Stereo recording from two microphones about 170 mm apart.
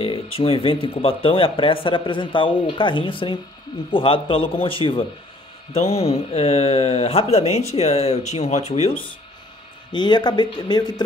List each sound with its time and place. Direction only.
0.0 s speech: 35° left (ahead or behind)
9.9 s speech: 25° left (ahead or behind)